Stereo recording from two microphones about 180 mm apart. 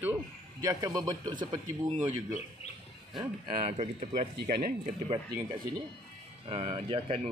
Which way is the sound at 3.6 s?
35° right (ahead or behind).